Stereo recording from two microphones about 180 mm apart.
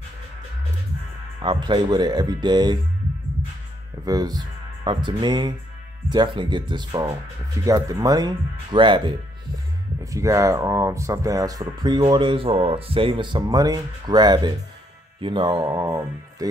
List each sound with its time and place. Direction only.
1.4 s speech: 25° right (ahead or behind)
4.0 s speech: 20° right (ahead or behind)